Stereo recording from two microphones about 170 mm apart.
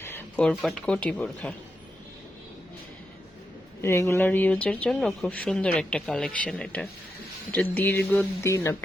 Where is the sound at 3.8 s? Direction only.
15° left (ahead or behind).